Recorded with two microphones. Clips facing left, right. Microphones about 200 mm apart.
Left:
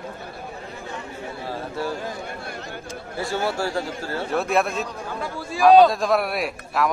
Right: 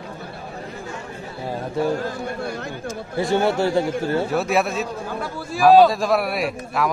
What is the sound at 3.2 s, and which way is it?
Speech, 20° right (ahead or behind).